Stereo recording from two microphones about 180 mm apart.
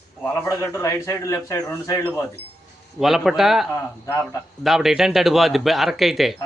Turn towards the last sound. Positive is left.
turn(degrees=0)  # may be behind; listen again after turning